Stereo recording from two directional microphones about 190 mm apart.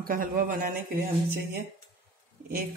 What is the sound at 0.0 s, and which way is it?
Speech, 45° right (ahead or behind).